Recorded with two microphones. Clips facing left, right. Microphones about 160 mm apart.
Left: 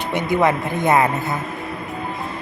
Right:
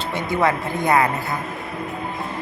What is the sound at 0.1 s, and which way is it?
Speech, 20° left (ahead or behind).